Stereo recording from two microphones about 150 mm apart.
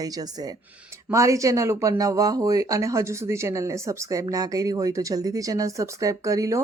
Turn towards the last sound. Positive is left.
turn(degrees=-20)  # may be behind; listen again after turning